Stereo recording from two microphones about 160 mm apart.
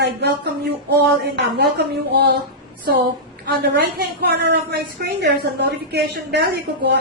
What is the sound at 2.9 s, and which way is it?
Speech, 75° right (ahead or behind).